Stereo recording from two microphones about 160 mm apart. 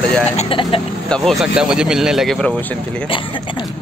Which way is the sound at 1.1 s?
Centre (ahead or behind).